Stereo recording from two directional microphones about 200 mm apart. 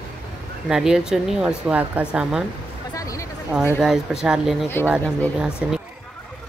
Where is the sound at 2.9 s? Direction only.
15° left (ahead or behind).